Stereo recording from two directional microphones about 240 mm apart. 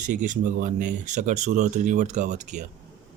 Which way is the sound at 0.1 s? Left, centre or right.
Right.